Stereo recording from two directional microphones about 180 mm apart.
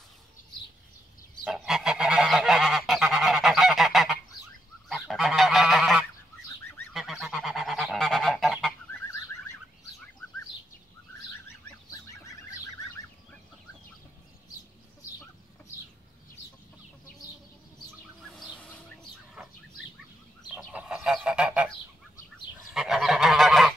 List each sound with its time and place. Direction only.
1.4 s goose: 5° right (ahead or behind)
11.9 s fowl: 20° left (ahead or behind)
18.3 s bird: centre (ahead or behind)
20.5 s goose: 5° right (ahead or behind)
22.7 s goose: centre (ahead or behind)